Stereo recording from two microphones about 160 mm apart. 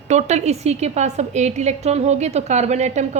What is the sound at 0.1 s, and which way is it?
A woman's voice, 45° right (ahead or behind).